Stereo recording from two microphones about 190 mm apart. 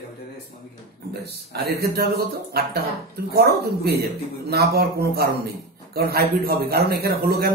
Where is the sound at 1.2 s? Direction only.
55° right (ahead or behind).